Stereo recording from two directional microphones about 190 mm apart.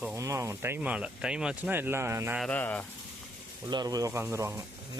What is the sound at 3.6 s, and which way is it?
Speech, 20° right (ahead or behind).